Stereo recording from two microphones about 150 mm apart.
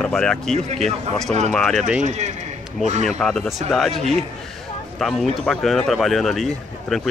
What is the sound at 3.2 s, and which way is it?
Speech, centre (ahead or behind).